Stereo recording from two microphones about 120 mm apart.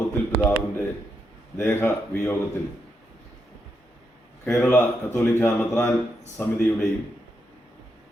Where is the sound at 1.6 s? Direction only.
20° left (ahead or behind).